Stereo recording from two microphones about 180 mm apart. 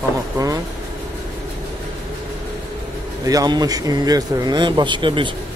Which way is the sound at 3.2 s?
20° right (ahead or behind).